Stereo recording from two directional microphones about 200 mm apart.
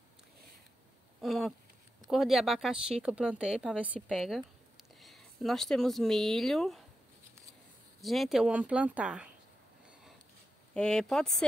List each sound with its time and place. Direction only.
1.2 s speech: centre (ahead or behind)
8.0 s speech: centre (ahead or behind)
10.7 s speech: 5° left (ahead or behind)